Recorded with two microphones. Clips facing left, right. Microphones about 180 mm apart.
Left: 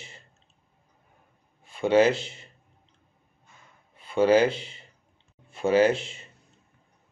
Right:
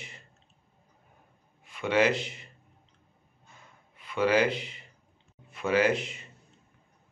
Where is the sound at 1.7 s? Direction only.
30° left (ahead or behind).